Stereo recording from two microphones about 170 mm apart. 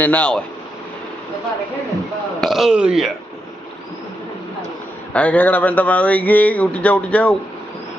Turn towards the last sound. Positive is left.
turn(degrees=5)  # may be behind; listen again after turning